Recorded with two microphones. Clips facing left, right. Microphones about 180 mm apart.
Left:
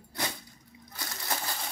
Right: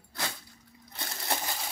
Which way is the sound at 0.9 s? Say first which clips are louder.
Right 2 dB; 25° right (ahead or behind).